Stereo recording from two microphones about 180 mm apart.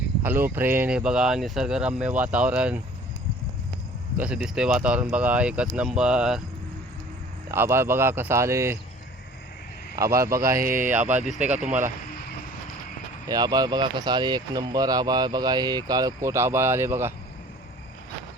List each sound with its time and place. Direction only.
0.2 s speech: 10° right (ahead or behind)
4.2 s speech: 5° right (ahead or behind)
7.5 s speech: 15° right (ahead or behind)
9.9 s speech: 15° right (ahead or behind)
11.0 s speech: 45° right (ahead or behind)
13.2 s speech: 20° right (ahead or behind)